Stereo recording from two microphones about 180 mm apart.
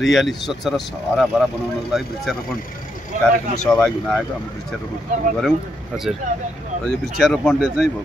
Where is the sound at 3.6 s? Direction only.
5° left (ahead or behind).